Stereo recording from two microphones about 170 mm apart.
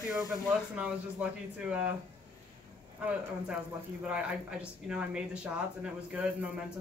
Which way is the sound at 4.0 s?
5° right (ahead or behind).